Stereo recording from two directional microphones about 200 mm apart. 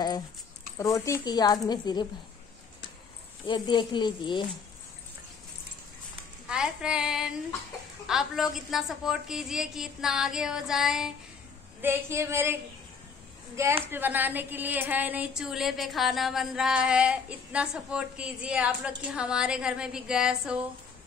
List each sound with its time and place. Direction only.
0.7 s speech: 15° left (ahead or behind)
3.4 s speech: 20° left (ahead or behind)
6.4 s a woman's voice: 5° right (ahead or behind)
13.8 s a woman's voice: 10° right (ahead or behind)